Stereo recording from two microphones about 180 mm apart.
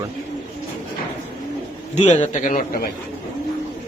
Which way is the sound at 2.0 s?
40° left (ahead or behind).